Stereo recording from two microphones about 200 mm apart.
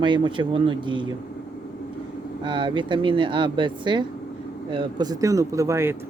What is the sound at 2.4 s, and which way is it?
Speech, 25° right (ahead or behind).